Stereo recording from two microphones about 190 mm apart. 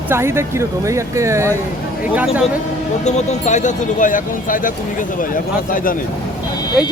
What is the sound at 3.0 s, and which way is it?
Speech, 35° left (ahead or behind).